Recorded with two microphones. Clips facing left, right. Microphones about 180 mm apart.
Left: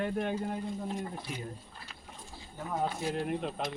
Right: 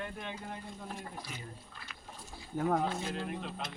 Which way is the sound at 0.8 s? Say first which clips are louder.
Left 6 dB; 25° left (ahead or behind).